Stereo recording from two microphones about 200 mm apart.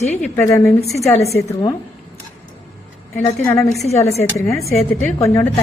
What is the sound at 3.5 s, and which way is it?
Speech, centre (ahead or behind).